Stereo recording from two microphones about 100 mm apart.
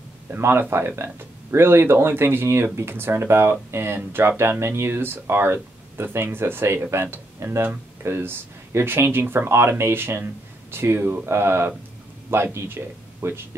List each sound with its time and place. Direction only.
0.3 s speech: 25° right (ahead or behind)